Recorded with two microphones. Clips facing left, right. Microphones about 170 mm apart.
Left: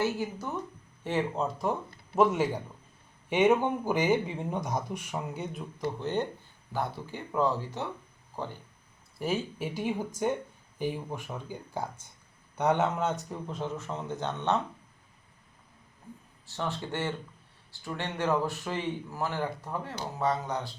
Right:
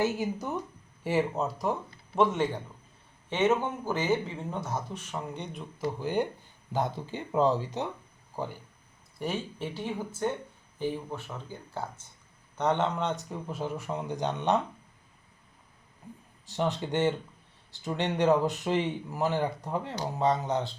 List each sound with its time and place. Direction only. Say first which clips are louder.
0.0 s speech: right 2 dB; 15° right (ahead or behind)
1.0 s speech: right 2 dB; 5° right (ahead or behind)
5.8 s speech: right 2 dB; 10° right (ahead or behind)
9.1 s speech: left 2 dB; 5° left (ahead or behind); by 14.6 s 15° right (ahead or behind)
16.5 s speech: right 5 dB; 20° right (ahead or behind)